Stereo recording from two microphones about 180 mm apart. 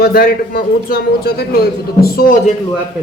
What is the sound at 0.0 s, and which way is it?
A man's voice, 60° left (ahead or behind).